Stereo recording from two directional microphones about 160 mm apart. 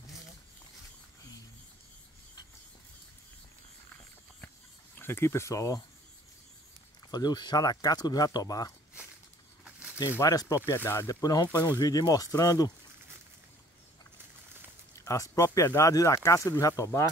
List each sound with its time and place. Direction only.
4.9 s speech: 15° left (ahead or behind)
7.1 s speech: 25° left (ahead or behind)
9.7 s a sound: 10° right (ahead or behind)
10.1 s speech: 20° left (ahead or behind)
15.0 s speech: 20° left (ahead or behind)